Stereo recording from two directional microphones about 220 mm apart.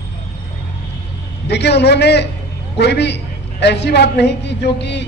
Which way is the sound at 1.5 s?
50° left (ahead or behind).